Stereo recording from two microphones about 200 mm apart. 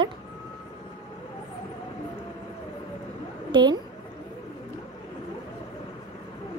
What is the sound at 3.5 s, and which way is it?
Speech, 20° right (ahead or behind).